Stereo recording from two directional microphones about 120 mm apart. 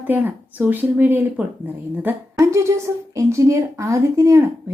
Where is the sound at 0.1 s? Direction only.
15° right (ahead or behind).